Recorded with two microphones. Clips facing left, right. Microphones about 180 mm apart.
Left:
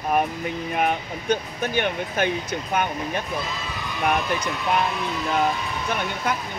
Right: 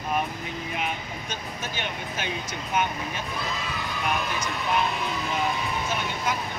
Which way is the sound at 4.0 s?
60° left (ahead or behind).